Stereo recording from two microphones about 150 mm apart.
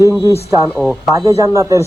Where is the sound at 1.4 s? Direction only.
20° right (ahead or behind).